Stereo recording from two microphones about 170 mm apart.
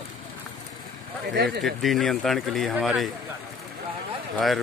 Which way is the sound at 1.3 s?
75° right (ahead or behind).